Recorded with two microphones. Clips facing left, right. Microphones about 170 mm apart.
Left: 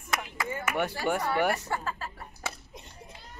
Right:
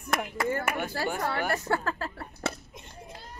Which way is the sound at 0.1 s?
60° right (ahead or behind).